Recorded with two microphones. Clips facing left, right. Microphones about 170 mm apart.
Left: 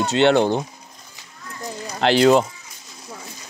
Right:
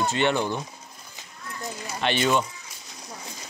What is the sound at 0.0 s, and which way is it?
Speech, 85° left.